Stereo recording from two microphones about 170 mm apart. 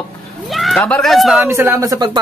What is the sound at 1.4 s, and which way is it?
Speech, 15° right (ahead or behind).